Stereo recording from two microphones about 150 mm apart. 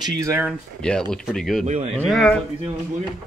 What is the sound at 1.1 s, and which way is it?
Speech, centre (ahead or behind).